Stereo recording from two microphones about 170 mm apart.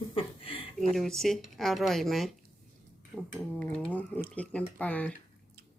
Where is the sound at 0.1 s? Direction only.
35° left (ahead or behind).